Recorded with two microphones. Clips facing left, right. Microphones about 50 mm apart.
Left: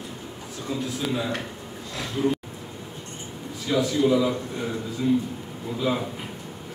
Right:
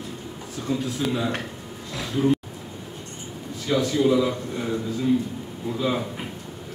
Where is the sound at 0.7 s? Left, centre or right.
Centre.